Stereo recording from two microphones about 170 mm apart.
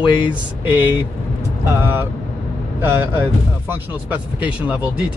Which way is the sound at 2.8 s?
15° right (ahead or behind).